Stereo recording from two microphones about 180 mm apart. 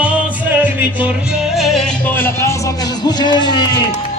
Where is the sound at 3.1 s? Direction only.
25° left (ahead or behind).